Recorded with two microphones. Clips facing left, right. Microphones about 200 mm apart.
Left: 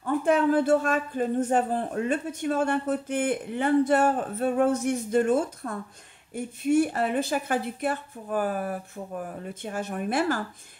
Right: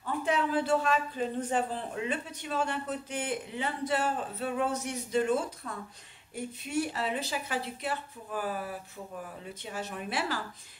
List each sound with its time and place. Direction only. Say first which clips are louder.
0.0 s a man's voice: left 7 dB; 50° left (ahead or behind)